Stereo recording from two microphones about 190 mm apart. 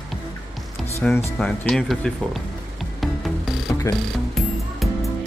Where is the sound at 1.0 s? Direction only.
5° left (ahead or behind).